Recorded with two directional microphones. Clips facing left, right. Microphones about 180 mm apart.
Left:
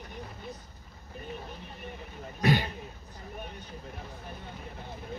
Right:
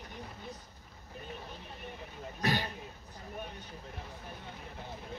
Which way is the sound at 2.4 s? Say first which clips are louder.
Left 6 dB; 15° left (ahead or behind).